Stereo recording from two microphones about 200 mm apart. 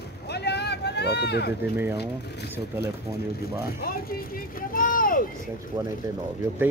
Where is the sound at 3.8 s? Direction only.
45° left (ahead or behind).